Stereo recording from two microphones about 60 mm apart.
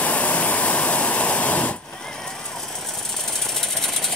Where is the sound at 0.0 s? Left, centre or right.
Left.